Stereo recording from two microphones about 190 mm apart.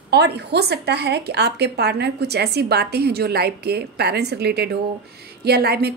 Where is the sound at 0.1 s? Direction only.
60° right (ahead or behind).